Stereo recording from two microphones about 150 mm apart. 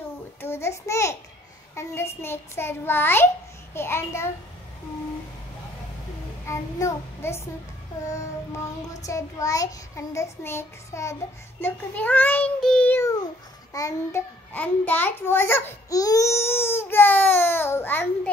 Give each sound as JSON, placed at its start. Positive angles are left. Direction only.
{"t": 0.4, "sound": "child singing", "side_deg": 15}
{"t": 1.8, "sound": "a child's voice", "side_deg": 20}
{"t": 6.4, "sound": "a child's voice", "side_deg": 20}
{"t": 13.7, "sound": "a child's voice", "side_deg": 20}